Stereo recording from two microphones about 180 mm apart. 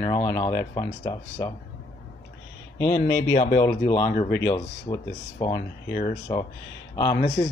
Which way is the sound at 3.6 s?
20° left (ahead or behind).